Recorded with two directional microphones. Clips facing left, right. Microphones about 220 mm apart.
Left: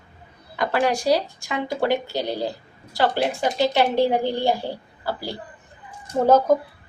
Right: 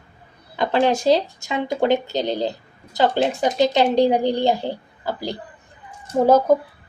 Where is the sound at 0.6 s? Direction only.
25° right (ahead or behind).